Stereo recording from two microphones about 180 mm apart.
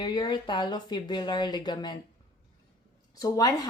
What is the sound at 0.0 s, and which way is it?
Speech, 25° left (ahead or behind).